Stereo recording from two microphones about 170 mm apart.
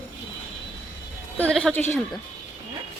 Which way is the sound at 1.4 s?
5° left (ahead or behind).